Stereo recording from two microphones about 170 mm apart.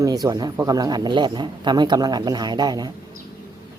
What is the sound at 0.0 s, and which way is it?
A man's voice, 20° right (ahead or behind).